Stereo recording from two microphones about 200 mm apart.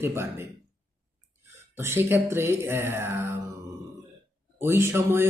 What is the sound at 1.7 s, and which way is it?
Speech, 10° right (ahead or behind).